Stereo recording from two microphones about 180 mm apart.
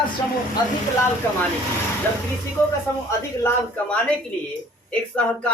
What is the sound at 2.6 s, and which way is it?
Speech, 15° left (ahead or behind).